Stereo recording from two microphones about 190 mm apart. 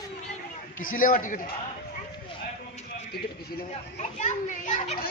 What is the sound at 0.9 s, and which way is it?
Speech, 45° left (ahead or behind).